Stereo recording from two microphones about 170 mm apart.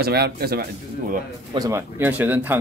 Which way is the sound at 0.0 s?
70° right (ahead or behind).